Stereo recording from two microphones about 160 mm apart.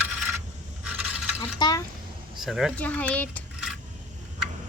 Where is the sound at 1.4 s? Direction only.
25° left (ahead or behind).